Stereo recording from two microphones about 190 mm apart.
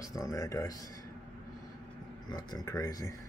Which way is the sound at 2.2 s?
20° left (ahead or behind).